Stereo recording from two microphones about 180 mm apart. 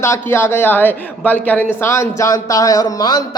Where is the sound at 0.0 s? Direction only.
15° left (ahead or behind).